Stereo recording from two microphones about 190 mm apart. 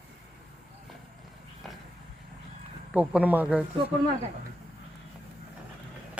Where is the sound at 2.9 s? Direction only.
10° right (ahead or behind).